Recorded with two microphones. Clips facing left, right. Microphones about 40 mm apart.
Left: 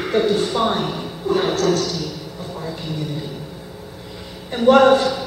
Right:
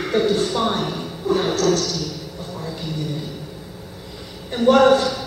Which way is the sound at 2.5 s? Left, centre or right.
Centre.